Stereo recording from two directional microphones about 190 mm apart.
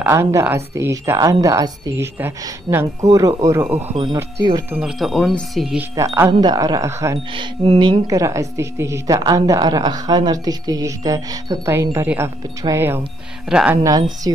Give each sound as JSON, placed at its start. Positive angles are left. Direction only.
{"t": 0.0, "sound": "a woman's voice", "side_deg": -15}
{"t": 4.7, "sound": "speech", "side_deg": -5}
{"t": 5.9, "sound": "a woman's voice", "side_deg": -15}
{"t": 7.3, "sound": "a woman's voice", "side_deg": -30}
{"t": 13.8, "sound": "speech", "side_deg": -20}